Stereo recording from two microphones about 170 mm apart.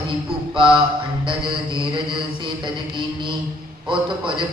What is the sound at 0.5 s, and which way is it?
Mantra, 30° right (ahead or behind).